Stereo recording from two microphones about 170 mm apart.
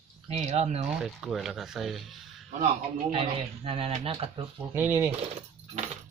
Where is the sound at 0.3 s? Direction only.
35° right (ahead or behind).